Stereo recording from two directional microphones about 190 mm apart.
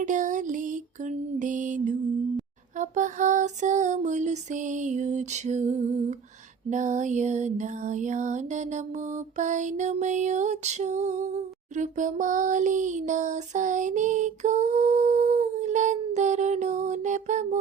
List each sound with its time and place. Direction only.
0.0 s music: 40° right (ahead or behind)